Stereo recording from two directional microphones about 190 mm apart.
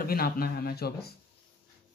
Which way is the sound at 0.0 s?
50° left (ahead or behind).